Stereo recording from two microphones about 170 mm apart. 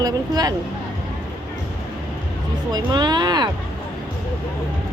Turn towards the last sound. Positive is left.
turn(degrees=-25)  # may be behind; listen again after turning